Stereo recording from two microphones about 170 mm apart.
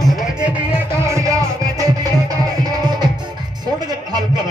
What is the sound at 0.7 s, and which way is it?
Music, 15° right (ahead or behind).